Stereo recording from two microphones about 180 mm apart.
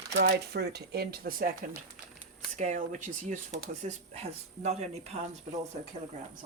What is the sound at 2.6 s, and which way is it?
Speech, 40° right (ahead or behind).